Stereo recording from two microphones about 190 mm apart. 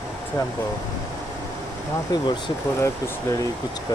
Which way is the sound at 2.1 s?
20° left (ahead or behind).